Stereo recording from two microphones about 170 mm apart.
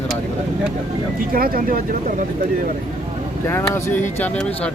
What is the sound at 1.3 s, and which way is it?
Speech, 60° right (ahead or behind).